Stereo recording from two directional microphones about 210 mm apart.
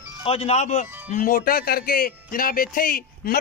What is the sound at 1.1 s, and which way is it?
A man's voice, 40° left (ahead or behind).